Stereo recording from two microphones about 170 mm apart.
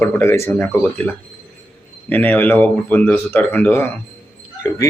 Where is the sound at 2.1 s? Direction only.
10° left (ahead or behind).